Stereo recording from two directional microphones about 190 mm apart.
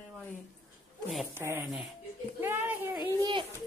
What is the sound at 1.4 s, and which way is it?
Speech, 10° right (ahead or behind).